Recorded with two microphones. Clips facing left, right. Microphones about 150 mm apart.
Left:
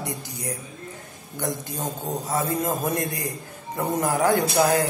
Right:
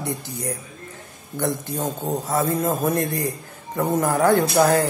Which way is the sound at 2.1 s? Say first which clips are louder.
Right 4 dB; 35° right (ahead or behind).